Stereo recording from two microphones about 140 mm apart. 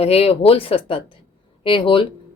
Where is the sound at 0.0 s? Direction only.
45° left (ahead or behind).